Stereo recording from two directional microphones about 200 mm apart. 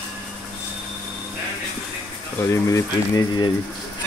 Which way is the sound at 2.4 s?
15° left (ahead or behind).